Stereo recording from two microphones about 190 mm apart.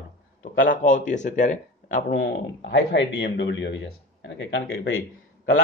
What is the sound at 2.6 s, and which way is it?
Speech, 65° left (ahead or behind).